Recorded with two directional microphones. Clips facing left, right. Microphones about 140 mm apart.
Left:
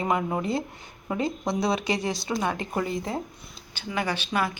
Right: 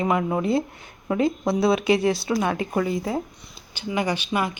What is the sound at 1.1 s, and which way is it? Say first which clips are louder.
A woman's voice: right 5 dB; 5° right (ahead or behind).